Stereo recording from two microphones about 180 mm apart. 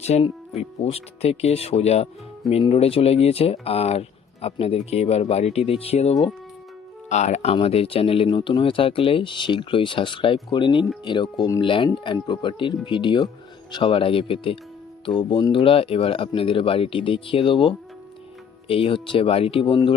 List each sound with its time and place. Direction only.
0.0 s speech: 35° left (ahead or behind)